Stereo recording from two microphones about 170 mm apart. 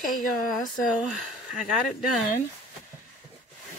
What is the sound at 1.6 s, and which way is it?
Speech, centre (ahead or behind).